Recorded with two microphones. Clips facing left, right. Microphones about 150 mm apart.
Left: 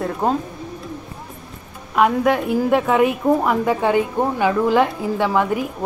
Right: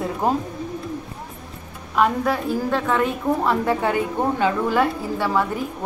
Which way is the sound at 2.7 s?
15° left (ahead or behind).